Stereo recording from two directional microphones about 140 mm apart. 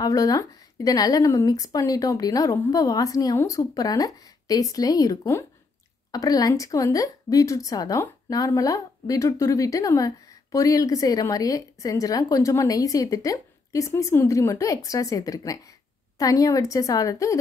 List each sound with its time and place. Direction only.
0.0 s a woman's voice: 25° left (ahead or behind)